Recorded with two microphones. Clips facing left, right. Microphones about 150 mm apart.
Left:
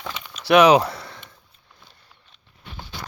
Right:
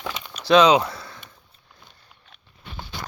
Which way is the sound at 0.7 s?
30° left (ahead or behind).